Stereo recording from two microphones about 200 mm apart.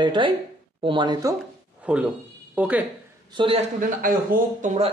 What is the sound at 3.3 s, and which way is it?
Speech, 25° right (ahead or behind).